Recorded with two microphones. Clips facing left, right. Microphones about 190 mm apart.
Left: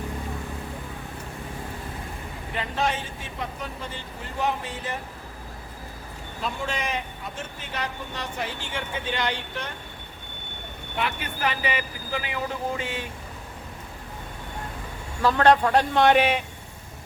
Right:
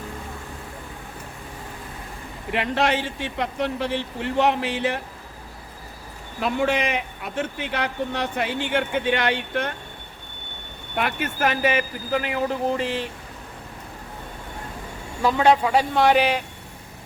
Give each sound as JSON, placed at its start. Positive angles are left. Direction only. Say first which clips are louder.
{"t": 2.5, "sound": "speech", "louder": "right 5 dB", "side_deg": -75}
{"t": 6.4, "sound": "a man's voice", "louder": "right 8 dB", "side_deg": -65}
{"t": 10.9, "sound": "speech", "louder": "right 4 dB", "side_deg": -50}
{"t": 15.2, "sound": "a man's voice", "louder": "right 1 dB", "side_deg": -10}